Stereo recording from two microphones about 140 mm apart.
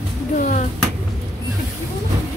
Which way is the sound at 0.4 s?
65° left (ahead or behind).